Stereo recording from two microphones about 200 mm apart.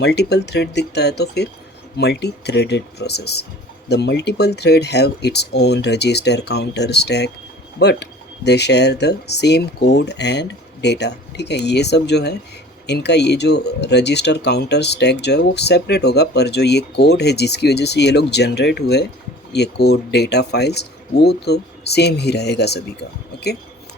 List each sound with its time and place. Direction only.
0.0 s speech: 55° left (ahead or behind)